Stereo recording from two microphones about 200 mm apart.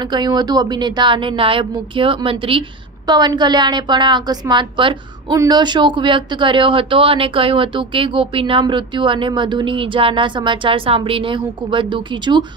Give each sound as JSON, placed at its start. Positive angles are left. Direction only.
{"t": 0.0, "sound": "a woman's voice", "side_deg": -20}